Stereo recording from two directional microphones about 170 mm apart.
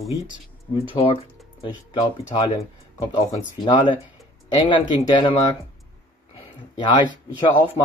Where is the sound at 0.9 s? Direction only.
30° left (ahead or behind).